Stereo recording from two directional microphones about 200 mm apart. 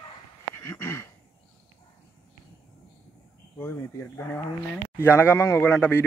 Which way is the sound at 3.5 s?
15° left (ahead or behind).